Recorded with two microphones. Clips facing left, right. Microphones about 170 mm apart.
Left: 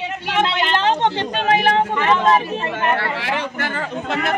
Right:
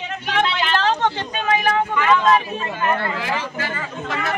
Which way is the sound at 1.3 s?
70° left (ahead or behind).